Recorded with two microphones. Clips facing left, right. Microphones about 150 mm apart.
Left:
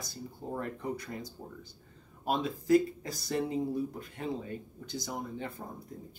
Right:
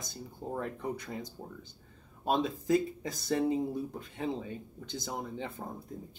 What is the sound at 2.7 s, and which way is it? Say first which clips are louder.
Speech: left 5 dB; 20° right (ahead or behind).